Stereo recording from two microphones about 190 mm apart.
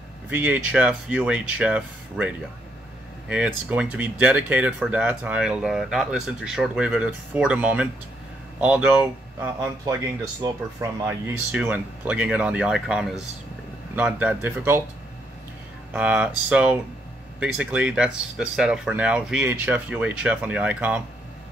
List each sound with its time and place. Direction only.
0.3 s speech: 10° right (ahead or behind)
15.9 s speech: 5° right (ahead or behind)